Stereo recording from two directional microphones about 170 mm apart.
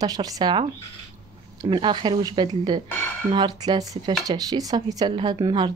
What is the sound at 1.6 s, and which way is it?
A woman's voice, 30° right (ahead or behind).